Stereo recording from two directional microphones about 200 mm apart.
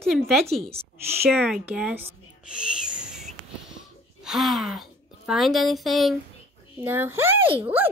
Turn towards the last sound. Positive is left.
turn(degrees=-10)  # may be behind; listen again after turning